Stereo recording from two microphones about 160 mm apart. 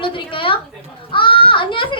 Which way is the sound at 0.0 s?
35° left (ahead or behind).